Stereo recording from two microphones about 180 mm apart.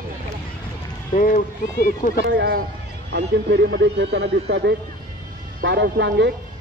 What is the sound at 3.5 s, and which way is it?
Speech, 85° right.